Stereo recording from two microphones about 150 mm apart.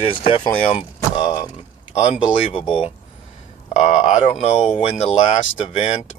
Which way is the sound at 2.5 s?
35° left (ahead or behind).